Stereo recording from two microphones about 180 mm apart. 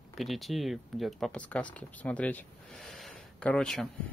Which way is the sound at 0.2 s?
Centre (ahead or behind).